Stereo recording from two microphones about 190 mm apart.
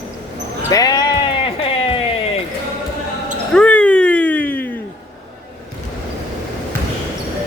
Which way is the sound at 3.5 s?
5° left (ahead or behind).